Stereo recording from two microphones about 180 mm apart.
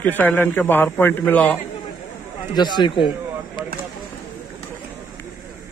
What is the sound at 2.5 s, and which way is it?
Speech, 25° left (ahead or behind).